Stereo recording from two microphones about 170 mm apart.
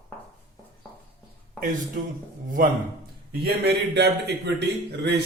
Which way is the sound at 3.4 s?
75° right (ahead or behind).